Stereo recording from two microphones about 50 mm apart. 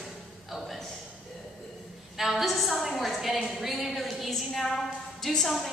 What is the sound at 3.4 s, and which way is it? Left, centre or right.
A woman's voice, centre.